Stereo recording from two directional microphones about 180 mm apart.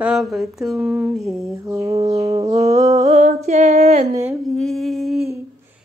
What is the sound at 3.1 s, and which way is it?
Music, 35° right (ahead or behind).